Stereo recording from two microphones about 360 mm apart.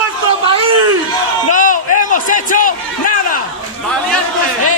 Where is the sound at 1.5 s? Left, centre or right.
Left.